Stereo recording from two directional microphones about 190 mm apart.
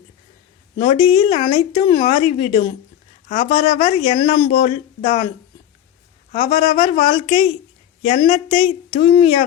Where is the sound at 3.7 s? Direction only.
40° left (ahead or behind).